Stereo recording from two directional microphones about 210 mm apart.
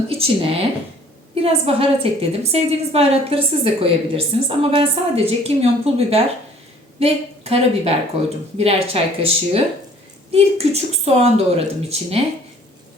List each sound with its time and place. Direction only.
0.1 s a woman's voice: 25° right (ahead or behind)